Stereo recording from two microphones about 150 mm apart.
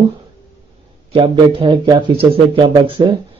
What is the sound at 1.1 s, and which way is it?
A man's voice, 35° right (ahead or behind).